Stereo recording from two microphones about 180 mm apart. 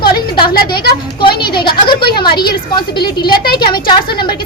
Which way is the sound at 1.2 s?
25° left (ahead or behind).